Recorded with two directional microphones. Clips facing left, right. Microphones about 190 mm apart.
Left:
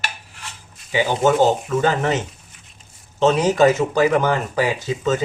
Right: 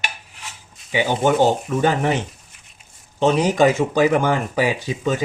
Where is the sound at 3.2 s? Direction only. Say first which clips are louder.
Left 1 dB; 15° right (ahead or behind).